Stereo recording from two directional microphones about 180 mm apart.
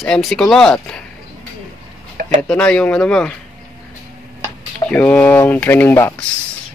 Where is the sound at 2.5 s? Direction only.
5° left (ahead or behind).